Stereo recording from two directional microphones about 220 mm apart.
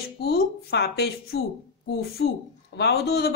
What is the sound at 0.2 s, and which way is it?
Speech, 45° left (ahead or behind).